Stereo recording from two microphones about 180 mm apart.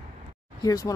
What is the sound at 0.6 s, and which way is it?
Speech, 20° left (ahead or behind).